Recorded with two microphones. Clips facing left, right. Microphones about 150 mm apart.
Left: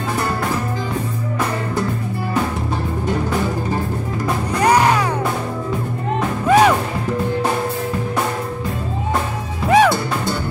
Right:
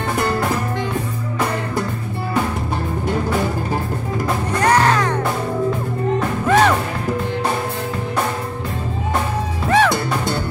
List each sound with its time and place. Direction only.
4.6 s music: 10° left (ahead or behind)
6.4 s music: 10° left (ahead or behind)
9.7 s music: 10° left (ahead or behind)